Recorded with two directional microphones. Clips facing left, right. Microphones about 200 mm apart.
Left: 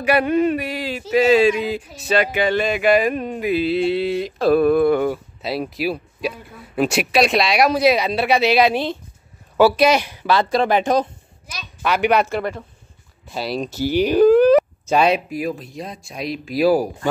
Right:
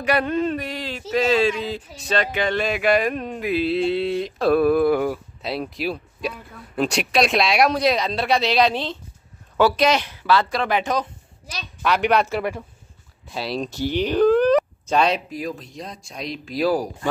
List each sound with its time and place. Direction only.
0.0 s speech: 10° left (ahead or behind)
10.6 s speech: 30° left (ahead or behind)
11.8 s speech: 5° left (ahead or behind)